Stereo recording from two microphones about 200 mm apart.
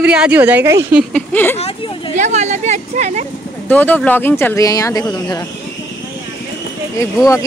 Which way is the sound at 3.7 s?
10° left (ahead or behind).